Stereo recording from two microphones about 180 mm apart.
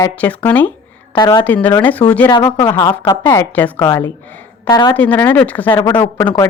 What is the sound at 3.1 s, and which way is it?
A woman's voice, 15° left (ahead or behind).